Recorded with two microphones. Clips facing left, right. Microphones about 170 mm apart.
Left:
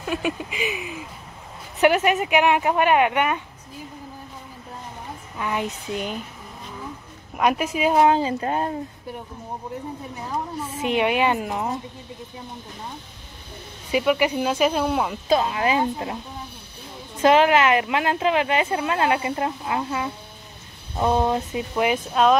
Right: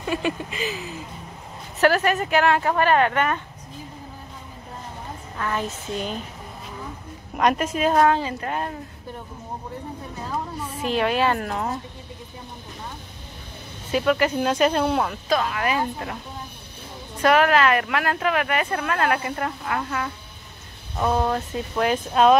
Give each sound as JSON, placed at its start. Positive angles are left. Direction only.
{"t": 0.0, "sound": "speech", "side_deg": 5}
{"t": 5.4, "sound": "speech", "side_deg": 15}
{"t": 7.3, "sound": "speech", "side_deg": 5}
{"t": 8.0, "sound": "speech", "side_deg": 25}
{"t": 10.3, "sound": "speech", "side_deg": 20}
{"t": 13.9, "sound": "speech", "side_deg": 10}
{"t": 15.2, "sound": "speech", "side_deg": 25}
{"t": 17.2, "sound": "speech", "side_deg": 25}
{"t": 22.1, "sound": "speech", "side_deg": 0}